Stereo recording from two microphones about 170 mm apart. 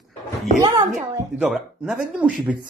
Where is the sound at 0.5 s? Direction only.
20° right (ahead or behind).